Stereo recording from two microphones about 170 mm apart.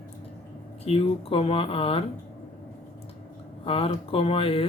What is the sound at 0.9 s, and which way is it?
Speech, 35° left (ahead or behind).